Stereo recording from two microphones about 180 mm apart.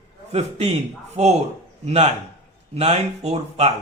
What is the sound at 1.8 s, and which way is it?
A man's voice, 35° right (ahead or behind).